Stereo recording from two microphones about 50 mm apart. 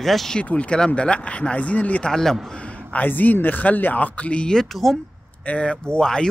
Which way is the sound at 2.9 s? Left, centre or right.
Left.